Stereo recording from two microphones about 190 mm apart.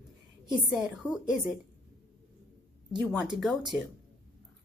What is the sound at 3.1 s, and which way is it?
Speech, 5° right (ahead or behind).